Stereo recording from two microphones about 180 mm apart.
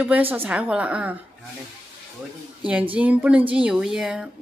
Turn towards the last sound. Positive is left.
turn(degrees=-5)  # may be behind; listen again after turning